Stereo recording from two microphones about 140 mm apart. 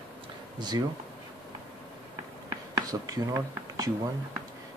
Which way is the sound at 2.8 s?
25° right (ahead or behind).